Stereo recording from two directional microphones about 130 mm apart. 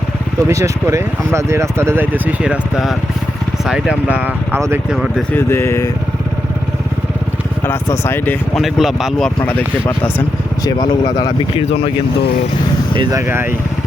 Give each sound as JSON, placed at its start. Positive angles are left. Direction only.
{"t": 0.4, "sound": "speech", "side_deg": -20}
{"t": 4.5, "sound": "speech", "side_deg": -20}
{"t": 4.9, "sound": "speech", "side_deg": -5}
{"t": 5.3, "sound": "speech", "side_deg": 20}
{"t": 7.7, "sound": "speech", "side_deg": 20}
{"t": 8.5, "sound": "speech", "side_deg": 0}
{"t": 10.7, "sound": "speech", "side_deg": 35}
{"t": 13.0, "sound": "speech", "side_deg": -30}